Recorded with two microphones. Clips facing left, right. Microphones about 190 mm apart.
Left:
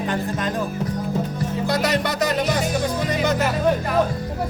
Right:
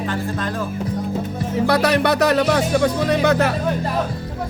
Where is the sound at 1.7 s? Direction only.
65° right (ahead or behind).